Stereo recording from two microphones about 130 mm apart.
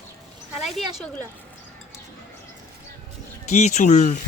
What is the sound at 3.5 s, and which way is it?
Speech, 60° left (ahead or behind).